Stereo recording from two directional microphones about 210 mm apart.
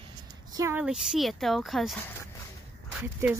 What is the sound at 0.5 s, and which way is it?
Speech, 15° right (ahead or behind).